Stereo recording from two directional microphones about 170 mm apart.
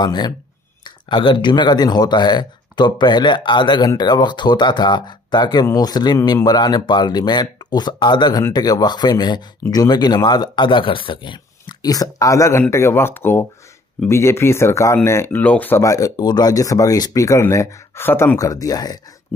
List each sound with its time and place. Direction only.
0.0 s speech: 25° left (ahead or behind)